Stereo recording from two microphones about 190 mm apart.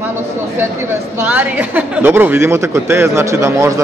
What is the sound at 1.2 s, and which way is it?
A woman's voice, 10° right (ahead or behind).